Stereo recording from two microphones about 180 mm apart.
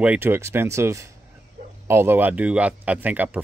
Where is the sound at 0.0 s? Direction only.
10° right (ahead or behind).